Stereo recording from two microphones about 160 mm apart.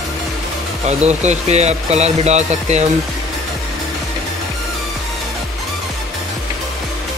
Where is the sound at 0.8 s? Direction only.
45° right (ahead or behind).